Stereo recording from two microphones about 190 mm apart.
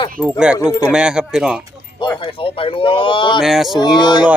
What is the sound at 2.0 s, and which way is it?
Speech, 25° left (ahead or behind).